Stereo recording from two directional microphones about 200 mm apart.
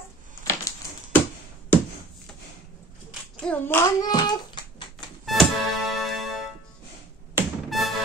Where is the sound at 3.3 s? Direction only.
5° left (ahead or behind); by 4.8 s 20° left (ahead or behind).